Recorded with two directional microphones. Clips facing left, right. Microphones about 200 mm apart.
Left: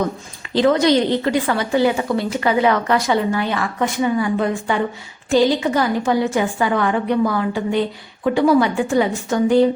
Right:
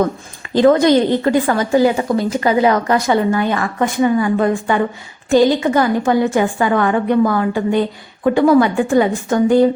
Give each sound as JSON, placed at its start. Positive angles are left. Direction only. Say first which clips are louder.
{"t": 0.5, "sound": "a woman's voice", "louder": "right 4 dB", "side_deg": -50}